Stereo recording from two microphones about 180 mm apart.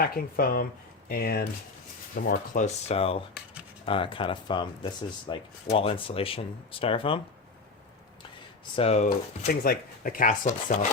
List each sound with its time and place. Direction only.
0.0 s speech: 55° left (ahead or behind); by 7.2 s 30° left (ahead or behind)
8.7 s speech: 35° left (ahead or behind)
9.5 s speech: 55° left (ahead or behind)